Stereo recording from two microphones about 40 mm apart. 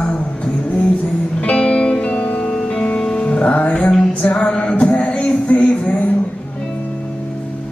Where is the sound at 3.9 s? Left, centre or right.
Centre.